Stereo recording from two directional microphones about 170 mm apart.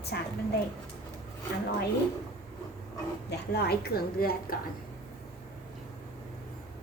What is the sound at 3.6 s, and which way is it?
Speech, 65° left (ahead or behind).